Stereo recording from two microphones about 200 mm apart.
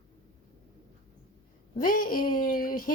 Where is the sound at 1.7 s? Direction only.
45° left (ahead or behind).